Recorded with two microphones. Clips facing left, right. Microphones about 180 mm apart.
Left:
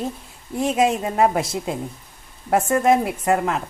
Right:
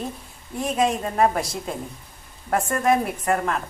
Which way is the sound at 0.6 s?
25° left (ahead or behind).